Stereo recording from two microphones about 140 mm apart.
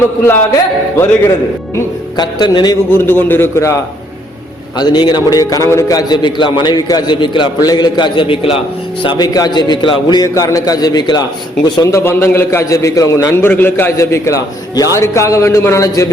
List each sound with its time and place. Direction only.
0.3 s a man's voice: 15° left (ahead or behind)
2.1 s a man's voice: 30° left (ahead or behind)
3.0 s a man's voice: 15° left (ahead or behind)
4.8 s a man's voice: 30° left (ahead or behind)
9.0 s a man's voice: 30° left (ahead or behind)